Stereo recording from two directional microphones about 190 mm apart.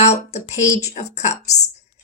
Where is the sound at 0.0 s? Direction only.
35° left (ahead or behind).